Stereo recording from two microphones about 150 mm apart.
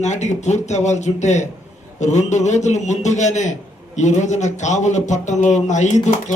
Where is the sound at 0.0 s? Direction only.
50° left (ahead or behind).